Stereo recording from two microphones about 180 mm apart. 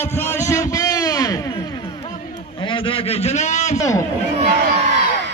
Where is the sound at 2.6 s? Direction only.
30° left (ahead or behind).